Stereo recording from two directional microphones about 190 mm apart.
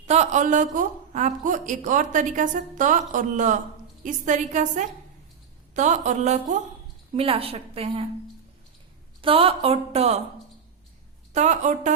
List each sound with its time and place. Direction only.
0.1 s a woman's voice: 35° right (ahead or behind)
9.2 s a woman's voice: 30° right (ahead or behind)
11.3 s a woman's voice: 40° right (ahead or behind)